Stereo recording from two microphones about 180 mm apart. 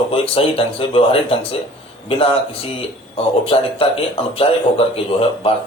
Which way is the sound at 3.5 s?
30° left (ahead or behind).